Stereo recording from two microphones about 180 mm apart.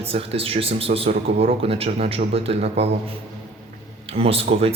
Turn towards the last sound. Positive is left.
turn(degrees=-30)  # may be behind; listen again after turning